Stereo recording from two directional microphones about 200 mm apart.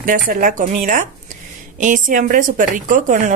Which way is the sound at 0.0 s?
40° right (ahead or behind).